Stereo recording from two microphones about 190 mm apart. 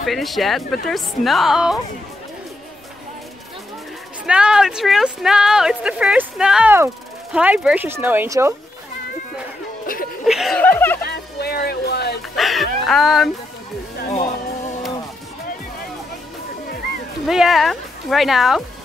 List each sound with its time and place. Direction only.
0.0 s speech: centre (ahead or behind)
4.3 s speech: 5° right (ahead or behind)
10.2 s speech: centre (ahead or behind)
10.6 s speech: 10° left (ahead or behind)
11.0 s music: 55° left (ahead or behind)
12.4 s a sound: centre (ahead or behind)
17.3 s speech: centre (ahead or behind)